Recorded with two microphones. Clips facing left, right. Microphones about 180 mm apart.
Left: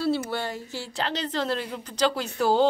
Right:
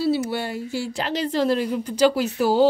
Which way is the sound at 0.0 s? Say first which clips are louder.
Right 4 dB; 5° right (ahead or behind).